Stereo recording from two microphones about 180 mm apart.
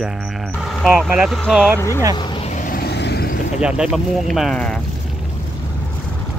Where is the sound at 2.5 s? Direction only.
50° left (ahead or behind); by 3.3 s 65° left (ahead or behind).